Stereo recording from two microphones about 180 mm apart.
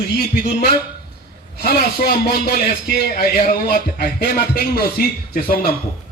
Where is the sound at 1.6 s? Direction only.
60° left (ahead or behind).